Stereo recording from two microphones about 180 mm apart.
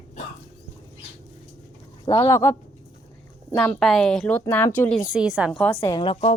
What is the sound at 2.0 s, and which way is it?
Speech, 20° left (ahead or behind).